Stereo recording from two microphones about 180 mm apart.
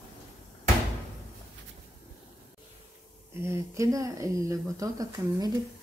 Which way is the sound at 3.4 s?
15° right (ahead or behind).